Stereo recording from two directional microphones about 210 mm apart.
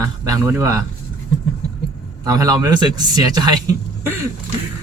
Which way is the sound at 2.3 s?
15° right (ahead or behind).